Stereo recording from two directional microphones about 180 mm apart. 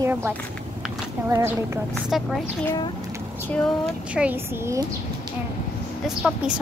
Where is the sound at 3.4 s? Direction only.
5° left (ahead or behind).